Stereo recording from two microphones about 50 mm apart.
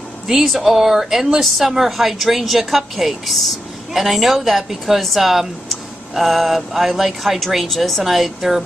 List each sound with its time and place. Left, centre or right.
0.3 s a woman's voice: centre